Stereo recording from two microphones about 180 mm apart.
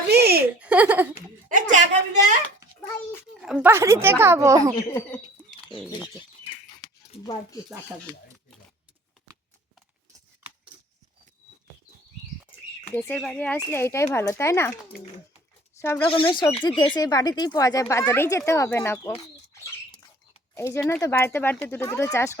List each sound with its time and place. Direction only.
0.1 s giggle: 60° right (ahead or behind)
0.6 s speech: 10° right (ahead or behind)
1.5 s a sound: 45° right (ahead or behind)
3.4 s a woman's voice: 5° right (ahead or behind)
4.8 s speech: 15° left (ahead or behind)
5.5 s chicken: centre (ahead or behind)
6.8 s a sound: 5° left (ahead or behind)
12.9 s speech: 10° left (ahead or behind)
15.8 s speech: 15° left (ahead or behind)
16.1 s speech: 25° left (ahead or behind)
20.6 s speech: 15° left (ahead or behind)